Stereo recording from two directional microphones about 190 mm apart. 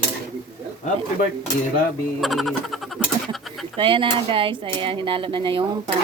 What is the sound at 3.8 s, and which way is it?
Speech, 25° right (ahead or behind).